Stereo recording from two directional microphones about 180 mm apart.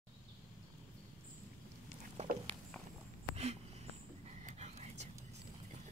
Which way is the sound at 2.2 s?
35° right (ahead or behind).